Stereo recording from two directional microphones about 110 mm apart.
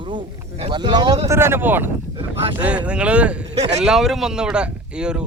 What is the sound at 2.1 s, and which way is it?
Speech, 50° right (ahead or behind).